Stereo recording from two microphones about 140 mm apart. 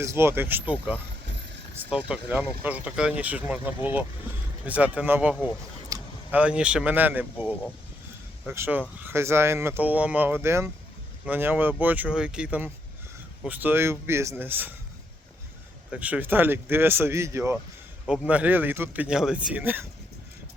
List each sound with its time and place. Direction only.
0.0 s speech: 20° right (ahead or behind)
4.6 s speech: 10° right (ahead or behind)
5.9 s a sound: 25° right (ahead or behind)
6.3 s speech: 10° right (ahead or behind)
15.9 s speech: 10° right (ahead or behind)
18.0 s speech: 5° right (ahead or behind)